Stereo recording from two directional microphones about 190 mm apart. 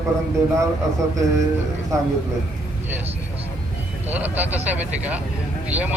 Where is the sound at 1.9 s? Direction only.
15° right (ahead or behind).